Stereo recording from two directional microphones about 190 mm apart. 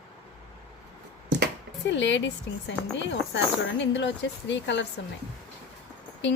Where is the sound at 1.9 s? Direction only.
70° left (ahead or behind).